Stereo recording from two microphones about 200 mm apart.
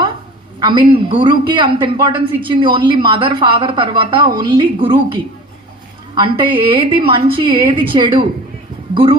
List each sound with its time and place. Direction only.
0.6 s a man's voice: 25° right (ahead or behind)